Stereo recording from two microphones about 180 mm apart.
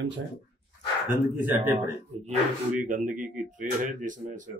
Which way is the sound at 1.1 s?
10° right (ahead or behind).